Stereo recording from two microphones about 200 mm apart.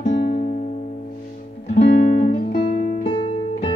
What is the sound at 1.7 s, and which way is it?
Music, 35° left (ahead or behind).